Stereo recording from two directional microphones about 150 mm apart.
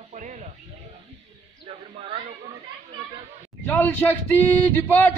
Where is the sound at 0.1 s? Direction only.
50° right (ahead or behind).